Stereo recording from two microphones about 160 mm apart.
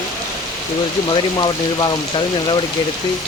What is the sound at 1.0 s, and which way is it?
Speech, 30° left (ahead or behind).